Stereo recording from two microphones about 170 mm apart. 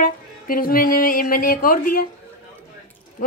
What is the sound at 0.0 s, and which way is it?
Speech, 55° left (ahead or behind).